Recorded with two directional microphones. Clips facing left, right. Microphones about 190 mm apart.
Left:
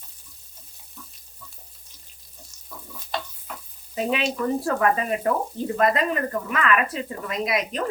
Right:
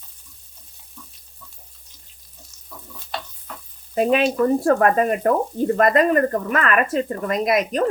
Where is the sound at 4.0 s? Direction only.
50° right (ahead or behind).